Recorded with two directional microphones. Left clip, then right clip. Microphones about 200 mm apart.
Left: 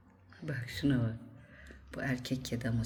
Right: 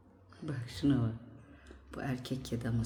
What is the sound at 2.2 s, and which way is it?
Speech, 15° right (ahead or behind).